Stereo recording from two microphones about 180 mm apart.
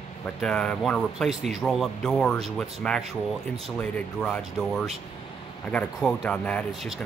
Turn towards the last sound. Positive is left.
turn(degrees=5)  # may be behind; listen again after turning